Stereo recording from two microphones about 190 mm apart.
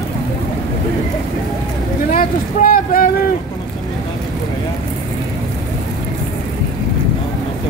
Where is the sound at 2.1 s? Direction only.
50° left (ahead or behind).